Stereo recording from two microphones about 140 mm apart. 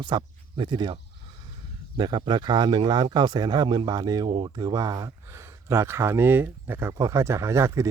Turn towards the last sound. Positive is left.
turn(degrees=-20)  # may be behind; listen again after turning